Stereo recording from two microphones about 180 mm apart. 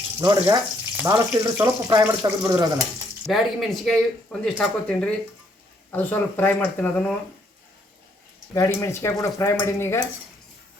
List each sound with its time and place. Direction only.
0.2 s speech: 20° right (ahead or behind)
3.2 s speech: centre (ahead or behind)
8.5 s speech: 15° left (ahead or behind)